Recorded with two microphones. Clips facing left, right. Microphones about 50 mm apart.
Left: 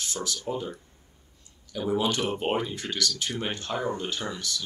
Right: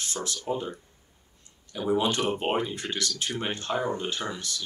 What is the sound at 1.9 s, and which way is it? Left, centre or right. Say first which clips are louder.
Speech: right 1 dB; right.